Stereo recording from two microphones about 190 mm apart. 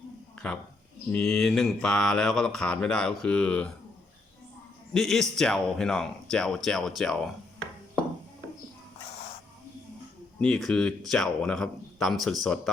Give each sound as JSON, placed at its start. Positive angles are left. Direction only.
{"t": 0.3, "sound": "a sound", "side_deg": 5}
{"t": 1.1, "sound": "mantra", "side_deg": 5}
{"t": 4.9, "sound": "mantra", "side_deg": 0}
{"t": 10.4, "sound": "mantra", "side_deg": 5}